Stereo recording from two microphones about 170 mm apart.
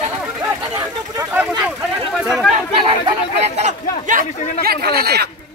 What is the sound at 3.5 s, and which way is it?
Speech, 45° right (ahead or behind).